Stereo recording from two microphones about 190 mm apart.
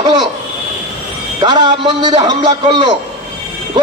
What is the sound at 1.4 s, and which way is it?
A man's voice, 20° right (ahead or behind).